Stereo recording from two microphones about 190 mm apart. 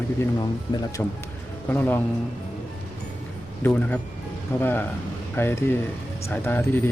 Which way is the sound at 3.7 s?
10° left (ahead or behind).